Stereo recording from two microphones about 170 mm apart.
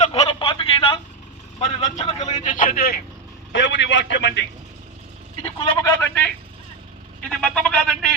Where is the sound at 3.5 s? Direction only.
90° left.